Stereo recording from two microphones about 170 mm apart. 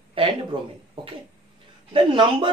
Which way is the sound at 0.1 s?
30° right (ahead or behind).